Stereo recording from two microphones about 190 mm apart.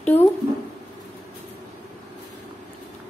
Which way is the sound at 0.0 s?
10° left (ahead or behind).